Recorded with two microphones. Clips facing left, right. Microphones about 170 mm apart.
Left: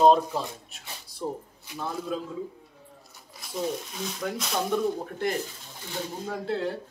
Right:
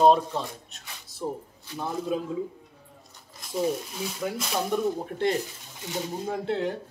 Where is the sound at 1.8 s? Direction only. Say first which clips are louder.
Right 3 dB; 20° right (ahead or behind).